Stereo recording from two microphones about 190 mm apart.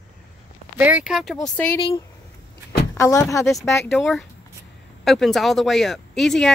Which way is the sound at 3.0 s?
15° left (ahead or behind).